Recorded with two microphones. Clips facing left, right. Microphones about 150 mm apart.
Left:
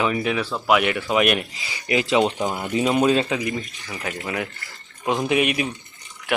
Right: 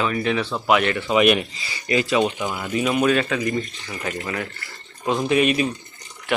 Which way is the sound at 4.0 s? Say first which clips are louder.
Even; 10° left (ahead or behind).